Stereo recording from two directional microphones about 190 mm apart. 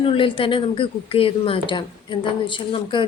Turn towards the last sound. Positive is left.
turn(degrees=25)  # may be behind; listen again after turning